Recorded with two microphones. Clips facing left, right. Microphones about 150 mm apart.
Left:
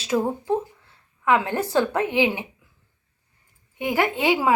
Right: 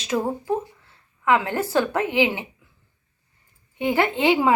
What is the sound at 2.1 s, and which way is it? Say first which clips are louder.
Speech: right 1 dB; 15° left (ahead or behind).